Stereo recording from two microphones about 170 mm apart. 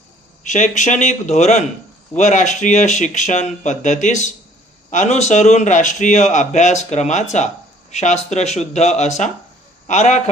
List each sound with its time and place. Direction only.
0.4 s a man's voice: 45° left (ahead or behind)